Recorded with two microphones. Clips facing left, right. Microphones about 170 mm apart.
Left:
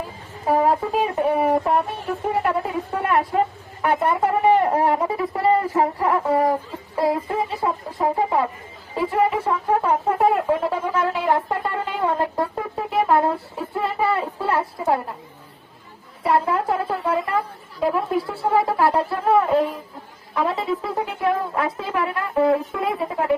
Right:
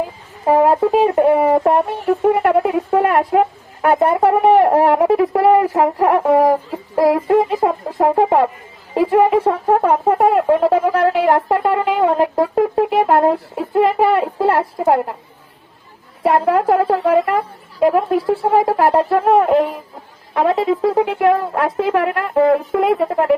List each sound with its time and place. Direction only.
0.4 s speech: 55° right (ahead or behind)
3.9 s a woman's voice: 50° right (ahead or behind); by 7.4 s 75° right (ahead or behind)
7.6 s a woman's voice: 65° right (ahead or behind)
10.8 s a woman's voice: 80° right
16.2 s a woman's voice: 65° right (ahead or behind)
18.7 s a woman's voice: 45° right (ahead or behind); by 23.3 s 65° right (ahead or behind)